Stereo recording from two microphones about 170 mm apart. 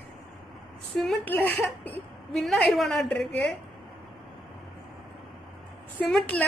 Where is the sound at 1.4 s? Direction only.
10° left (ahead or behind).